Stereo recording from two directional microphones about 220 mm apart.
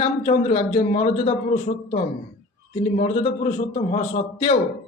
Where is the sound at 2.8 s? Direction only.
30° left (ahead or behind).